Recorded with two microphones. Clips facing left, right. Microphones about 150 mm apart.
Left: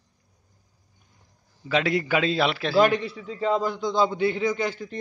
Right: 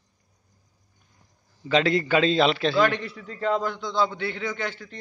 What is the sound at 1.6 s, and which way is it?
A man's voice, 10° left (ahead or behind).